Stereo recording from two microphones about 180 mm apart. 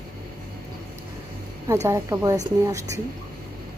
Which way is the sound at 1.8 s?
15° right (ahead or behind).